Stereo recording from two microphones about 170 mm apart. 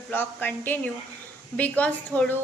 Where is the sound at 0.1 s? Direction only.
10° left (ahead or behind).